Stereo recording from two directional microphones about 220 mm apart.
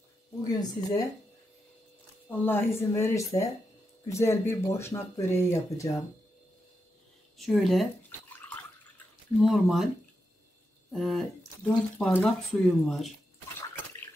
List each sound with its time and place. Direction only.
0.4 s speech: 15° left (ahead or behind)
2.2 s speech: 10° left (ahead or behind)
7.3 s speech: centre (ahead or behind)
9.4 s speech: centre (ahead or behind)
10.9 s speech: centre (ahead or behind)